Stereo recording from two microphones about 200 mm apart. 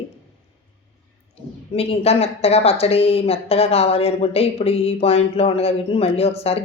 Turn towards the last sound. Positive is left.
turn(degrees=30)  # may be behind; listen again after turning